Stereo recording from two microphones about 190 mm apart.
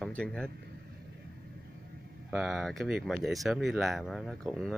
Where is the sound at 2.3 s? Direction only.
Centre (ahead or behind).